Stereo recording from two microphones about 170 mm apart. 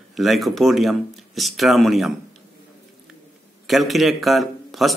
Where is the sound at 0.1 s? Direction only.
Centre (ahead or behind).